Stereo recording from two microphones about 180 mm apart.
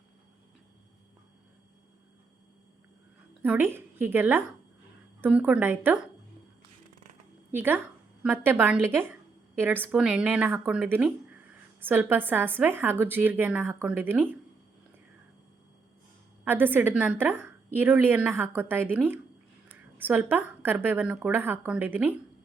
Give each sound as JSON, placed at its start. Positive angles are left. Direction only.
{"t": 3.4, "sound": "a woman's voice", "side_deg": -10}
{"t": 7.5, "sound": "a woman's voice", "side_deg": -10}
{"t": 9.7, "sound": "a woman's voice", "side_deg": 10}
{"t": 10.0, "sound": "a woman's voice", "side_deg": -5}
{"t": 16.4, "sound": "a woman's voice", "side_deg": -10}